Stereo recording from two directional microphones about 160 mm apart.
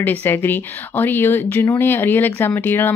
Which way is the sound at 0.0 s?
10° left (ahead or behind).